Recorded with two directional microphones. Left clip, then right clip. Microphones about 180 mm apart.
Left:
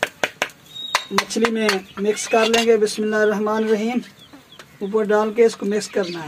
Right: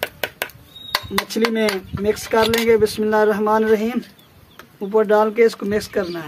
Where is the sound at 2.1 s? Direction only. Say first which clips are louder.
Right 1 dB; 10° right (ahead or behind).